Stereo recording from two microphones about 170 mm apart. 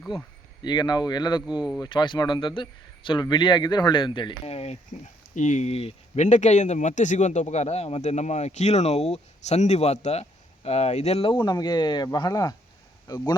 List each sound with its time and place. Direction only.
0.1 s speech: 30° left (ahead or behind)
1.5 s speech: 5° right (ahead or behind)
1.8 s speech: 25° left (ahead or behind)